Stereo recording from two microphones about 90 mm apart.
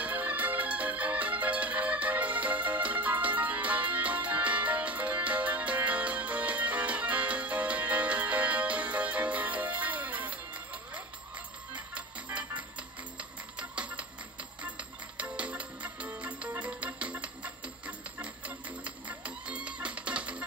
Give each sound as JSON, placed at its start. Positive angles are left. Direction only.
{"t": 0.0, "sound": "music", "side_deg": -15}